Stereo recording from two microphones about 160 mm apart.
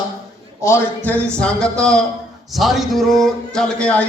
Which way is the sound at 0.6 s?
15° left (ahead or behind).